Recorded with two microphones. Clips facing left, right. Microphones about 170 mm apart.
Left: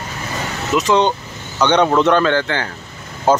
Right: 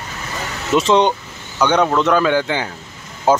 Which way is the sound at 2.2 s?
10° right (ahead or behind).